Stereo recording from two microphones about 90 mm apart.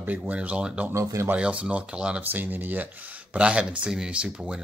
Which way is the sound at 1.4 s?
15° right (ahead or behind).